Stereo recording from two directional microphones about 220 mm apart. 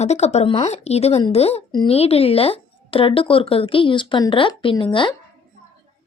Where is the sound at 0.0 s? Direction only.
30° left (ahead or behind).